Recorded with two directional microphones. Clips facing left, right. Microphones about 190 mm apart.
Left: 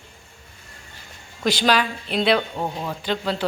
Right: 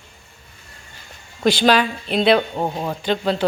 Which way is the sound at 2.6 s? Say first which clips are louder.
Right 4 dB; 35° right (ahead or behind).